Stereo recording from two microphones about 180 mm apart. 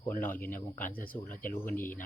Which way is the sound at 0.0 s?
10° left (ahead or behind).